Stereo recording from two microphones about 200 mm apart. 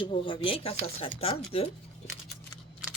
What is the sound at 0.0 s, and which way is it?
Speech, 25° left (ahead or behind).